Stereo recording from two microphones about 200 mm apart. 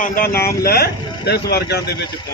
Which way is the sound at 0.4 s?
50° left (ahead or behind).